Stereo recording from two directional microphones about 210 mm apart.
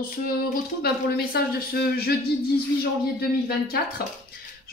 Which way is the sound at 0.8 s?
50° left (ahead or behind).